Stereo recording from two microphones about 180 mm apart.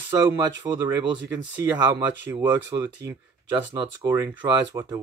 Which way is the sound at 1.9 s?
15° right (ahead or behind).